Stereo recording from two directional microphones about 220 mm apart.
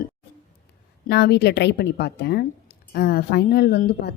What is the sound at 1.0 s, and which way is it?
Speech, 50° left (ahead or behind).